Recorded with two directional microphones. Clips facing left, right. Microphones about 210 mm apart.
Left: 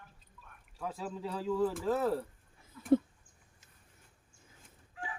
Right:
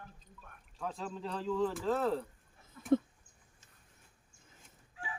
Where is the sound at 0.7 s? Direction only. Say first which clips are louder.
Left 1 dB; 5° left (ahead or behind).